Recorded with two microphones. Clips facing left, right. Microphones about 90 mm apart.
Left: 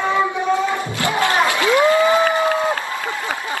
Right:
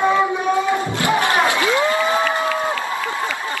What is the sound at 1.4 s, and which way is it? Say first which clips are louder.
Crowd: left 1 dB; 25° right (ahead or behind).